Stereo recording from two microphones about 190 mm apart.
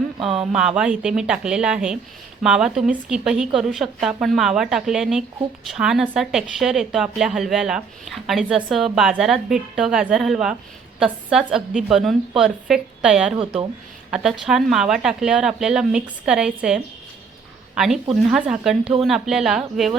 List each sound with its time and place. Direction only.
0.3 s a woman's voice: 5° right (ahead or behind)
13.4 s speech: 30° right (ahead or behind)
14.1 s a woman's voice: centre (ahead or behind)